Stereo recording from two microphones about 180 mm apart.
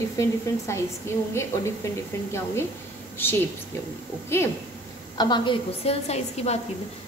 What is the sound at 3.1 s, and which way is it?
A woman's voice, 10° left (ahead or behind).